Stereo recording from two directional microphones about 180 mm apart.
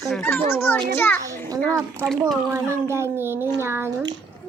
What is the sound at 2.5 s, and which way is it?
A child's voice, 15° right (ahead or behind).